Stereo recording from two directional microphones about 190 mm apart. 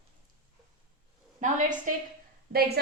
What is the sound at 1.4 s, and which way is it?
Speech, 40° right (ahead or behind).